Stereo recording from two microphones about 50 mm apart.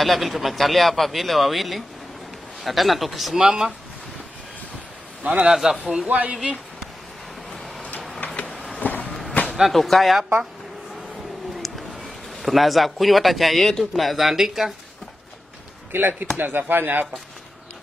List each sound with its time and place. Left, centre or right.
0.0 s speech: centre
5.2 s a man's voice: right
5.5 s speech: centre
6.0 s speech: right
6.3 s speech: centre
7.5 s a sound: centre
8.5 s vehicle: centre
8.7 s a sound: left
9.6 s speech: centre
11.5 s a man's voice: centre
15.9 s speech: right